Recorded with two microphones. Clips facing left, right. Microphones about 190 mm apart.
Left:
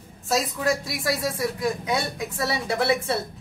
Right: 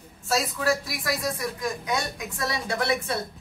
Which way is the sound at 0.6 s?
20° left (ahead or behind).